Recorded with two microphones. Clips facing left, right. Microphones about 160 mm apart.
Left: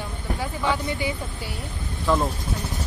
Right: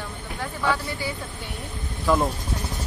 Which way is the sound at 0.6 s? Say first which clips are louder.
Even; 15° left (ahead or behind).